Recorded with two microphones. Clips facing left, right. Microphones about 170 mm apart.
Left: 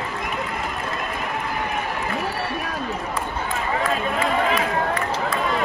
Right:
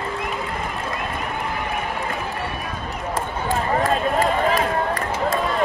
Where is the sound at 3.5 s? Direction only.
40° right (ahead or behind).